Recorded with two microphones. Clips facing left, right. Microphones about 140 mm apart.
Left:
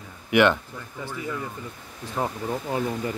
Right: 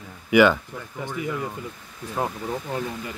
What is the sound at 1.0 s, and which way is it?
Speech, 20° right (ahead or behind).